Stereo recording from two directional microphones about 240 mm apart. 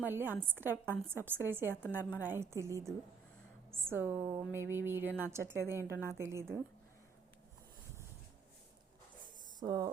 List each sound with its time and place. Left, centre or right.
0.0 s a woman's voice: centre
9.6 s speech: centre